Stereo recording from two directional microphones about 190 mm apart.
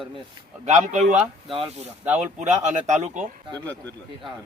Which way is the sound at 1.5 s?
30° right (ahead or behind).